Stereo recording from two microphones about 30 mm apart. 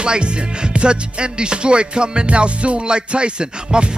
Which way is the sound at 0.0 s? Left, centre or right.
Right.